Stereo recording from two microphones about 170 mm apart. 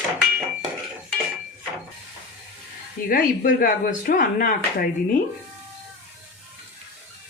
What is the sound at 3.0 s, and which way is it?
Speech, 55° left (ahead or behind).